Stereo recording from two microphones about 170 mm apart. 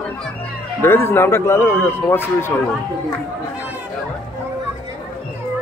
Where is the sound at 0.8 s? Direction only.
15° left (ahead or behind).